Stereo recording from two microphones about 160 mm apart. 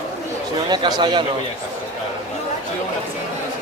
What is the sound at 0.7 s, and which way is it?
Speech, 25° right (ahead or behind).